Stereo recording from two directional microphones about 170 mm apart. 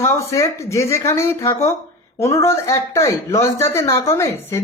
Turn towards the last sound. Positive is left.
turn(degrees=15)  # may be behind; listen again after turning